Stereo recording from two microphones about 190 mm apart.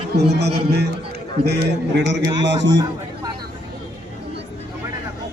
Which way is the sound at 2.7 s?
20° right (ahead or behind).